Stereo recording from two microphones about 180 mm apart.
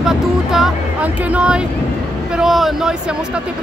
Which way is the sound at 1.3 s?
5° right (ahead or behind).